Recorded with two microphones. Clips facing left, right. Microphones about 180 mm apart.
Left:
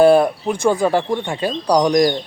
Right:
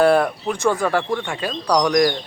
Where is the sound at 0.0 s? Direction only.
15° left (ahead or behind).